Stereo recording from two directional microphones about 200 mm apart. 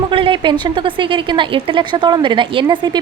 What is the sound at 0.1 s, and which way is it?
Speech, 25° right (ahead or behind).